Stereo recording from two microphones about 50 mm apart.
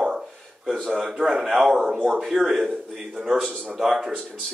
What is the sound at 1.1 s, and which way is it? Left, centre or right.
Speech, centre.